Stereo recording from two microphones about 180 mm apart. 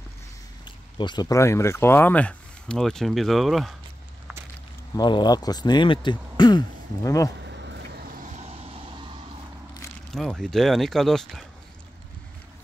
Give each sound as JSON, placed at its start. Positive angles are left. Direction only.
{"t": 0.7, "sound": "speech", "side_deg": 25}
{"t": 4.9, "sound": "speech", "side_deg": 25}
{"t": 7.4, "sound": "vehicle", "side_deg": -70}
{"t": 10.1, "sound": "speech", "side_deg": 0}